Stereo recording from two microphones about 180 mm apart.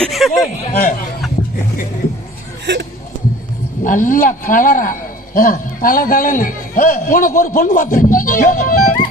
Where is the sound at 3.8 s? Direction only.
45° left (ahead or behind).